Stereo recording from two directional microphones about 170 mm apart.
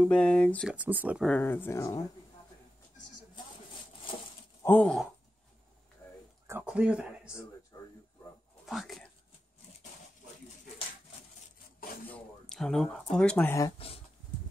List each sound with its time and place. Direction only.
0.0 s speech: 5° left (ahead or behind)
0.7 s speech: 10° right (ahead or behind)
1.2 s speech: 10° left (ahead or behind)
4.6 s speech: 10° left (ahead or behind)
6.4 s speech: 10° right (ahead or behind)
8.6 s speech: centre (ahead or behind)
12.1 s speech: 5° left (ahead or behind)
13.7 s a sound: 35° left (ahead or behind)